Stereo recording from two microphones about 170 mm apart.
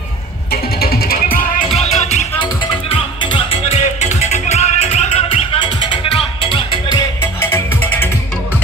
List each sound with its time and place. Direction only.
0.5 s music: 65° left (ahead or behind)
1.7 s music: 40° left (ahead or behind)
2.9 s music: 30° left (ahead or behind)
7.0 s music: 15° left (ahead or behind)